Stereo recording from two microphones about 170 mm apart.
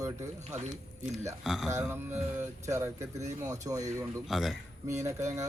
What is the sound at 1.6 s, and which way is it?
Speech, 15° right (ahead or behind).